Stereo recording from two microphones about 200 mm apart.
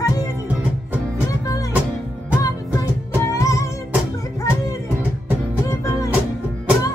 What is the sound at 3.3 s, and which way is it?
Music, 15° left (ahead or behind).